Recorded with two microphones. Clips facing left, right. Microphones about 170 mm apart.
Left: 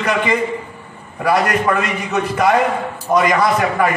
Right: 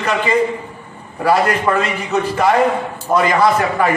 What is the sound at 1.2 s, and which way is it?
A man's voice, 30° right (ahead or behind).